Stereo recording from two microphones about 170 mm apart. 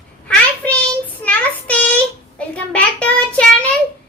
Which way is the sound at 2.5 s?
5° left (ahead or behind).